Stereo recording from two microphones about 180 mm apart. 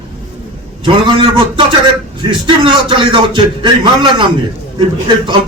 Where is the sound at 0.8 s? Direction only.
25° right (ahead or behind).